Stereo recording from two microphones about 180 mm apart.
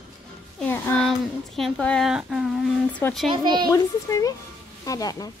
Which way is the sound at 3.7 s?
20° left (ahead or behind).